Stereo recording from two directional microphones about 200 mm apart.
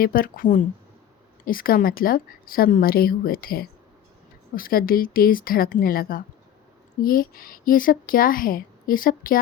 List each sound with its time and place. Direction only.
0.0 s speech: 45° left (ahead or behind)